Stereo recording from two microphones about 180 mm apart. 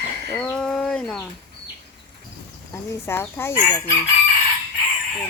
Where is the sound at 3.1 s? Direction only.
10° left (ahead or behind).